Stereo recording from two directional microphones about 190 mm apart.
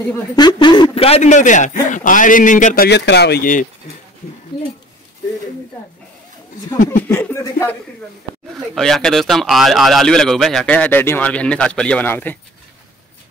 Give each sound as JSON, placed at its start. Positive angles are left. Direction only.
{"t": 0.4, "sound": "a man's voice", "side_deg": 20}
{"t": 7.1, "sound": "speech", "side_deg": 15}
{"t": 8.5, "sound": "speech", "side_deg": 0}